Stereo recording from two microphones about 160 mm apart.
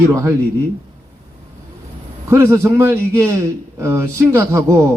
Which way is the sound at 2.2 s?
15° right (ahead or behind).